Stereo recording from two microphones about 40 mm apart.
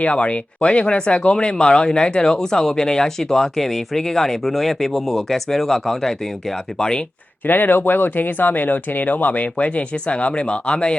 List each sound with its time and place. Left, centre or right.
0.0 s speech: left
7.4 s speech: left